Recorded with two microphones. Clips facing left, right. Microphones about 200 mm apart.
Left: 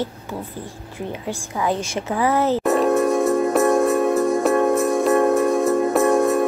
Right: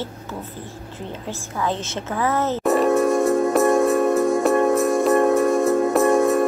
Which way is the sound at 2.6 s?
Centre (ahead or behind).